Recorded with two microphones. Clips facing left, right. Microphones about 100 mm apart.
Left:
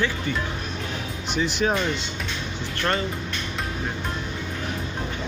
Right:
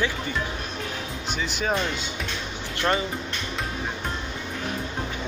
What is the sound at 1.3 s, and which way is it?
Speech, centre (ahead or behind).